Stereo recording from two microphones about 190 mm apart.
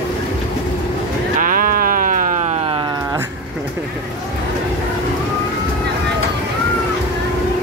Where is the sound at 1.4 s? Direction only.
45° right (ahead or behind).